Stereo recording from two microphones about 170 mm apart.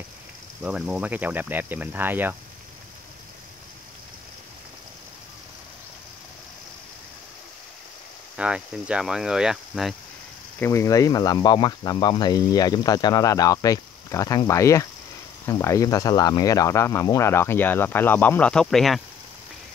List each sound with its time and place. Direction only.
0.6 s speech: 5° right (ahead or behind)
8.4 s speech: 5° right (ahead or behind)
10.6 s speech: 15° left (ahead or behind); by 18.9 s centre (ahead or behind)